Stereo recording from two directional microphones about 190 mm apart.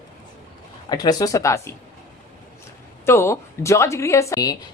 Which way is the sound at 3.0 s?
15° left (ahead or behind).